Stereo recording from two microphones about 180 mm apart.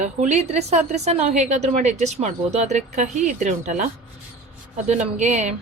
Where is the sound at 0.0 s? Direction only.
40° right (ahead or behind).